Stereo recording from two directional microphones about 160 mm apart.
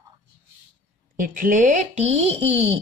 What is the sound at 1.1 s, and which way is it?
Speech, 60° right (ahead or behind).